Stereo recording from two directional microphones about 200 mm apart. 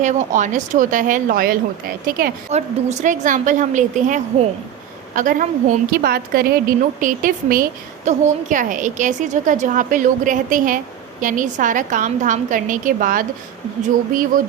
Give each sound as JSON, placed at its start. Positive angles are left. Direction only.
{"t": 0.0, "sound": "a woman's voice", "side_deg": -35}
{"t": 2.5, "sound": "a woman's voice", "side_deg": -35}